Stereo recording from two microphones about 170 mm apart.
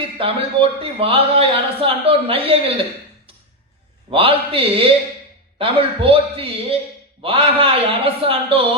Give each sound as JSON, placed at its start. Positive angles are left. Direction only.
{"t": 0.2, "sound": "a man's voice", "side_deg": -30}
{"t": 4.1, "sound": "a man's voice", "side_deg": -30}